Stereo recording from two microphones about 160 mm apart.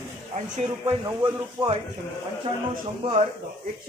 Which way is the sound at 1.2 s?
20° right (ahead or behind).